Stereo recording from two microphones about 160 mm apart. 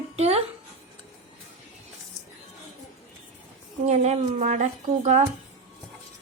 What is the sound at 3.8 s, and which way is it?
A woman's voice, 45° right (ahead or behind).